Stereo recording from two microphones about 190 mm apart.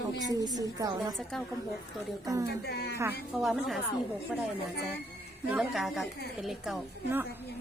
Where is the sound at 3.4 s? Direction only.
Centre (ahead or behind).